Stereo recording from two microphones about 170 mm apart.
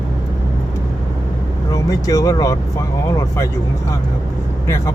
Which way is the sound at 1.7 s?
20° left (ahead or behind).